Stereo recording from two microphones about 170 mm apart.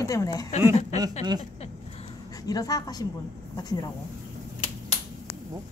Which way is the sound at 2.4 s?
20° left (ahead or behind).